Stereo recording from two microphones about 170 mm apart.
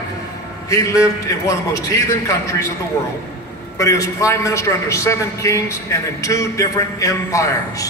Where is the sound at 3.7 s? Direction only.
20° left (ahead or behind).